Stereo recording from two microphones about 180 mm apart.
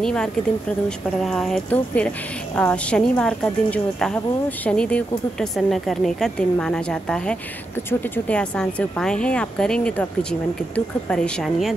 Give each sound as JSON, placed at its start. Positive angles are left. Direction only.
{"t": 0.0, "sound": "a woman's voice", "side_deg": 5}
{"t": 11.1, "sound": "a woman's voice", "side_deg": 5}